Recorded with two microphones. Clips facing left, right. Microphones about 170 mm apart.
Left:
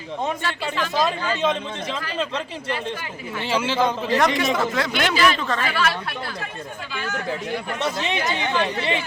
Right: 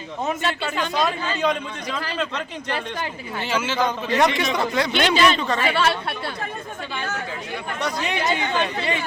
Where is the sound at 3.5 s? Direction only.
30° left (ahead or behind).